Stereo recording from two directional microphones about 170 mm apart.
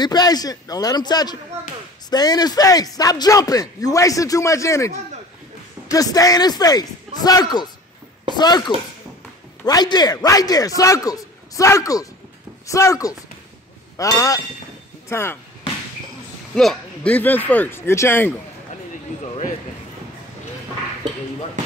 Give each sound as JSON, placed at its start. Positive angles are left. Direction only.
{"t": 0.0, "sound": "speech", "side_deg": 25}
{"t": 16.5, "sound": "speech", "side_deg": 5}